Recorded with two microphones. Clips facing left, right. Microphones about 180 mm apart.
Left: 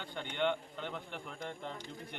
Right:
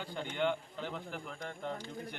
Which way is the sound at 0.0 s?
5° right (ahead or behind).